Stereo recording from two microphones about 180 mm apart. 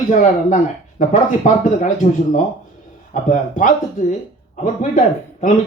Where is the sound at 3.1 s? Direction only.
45° left (ahead or behind).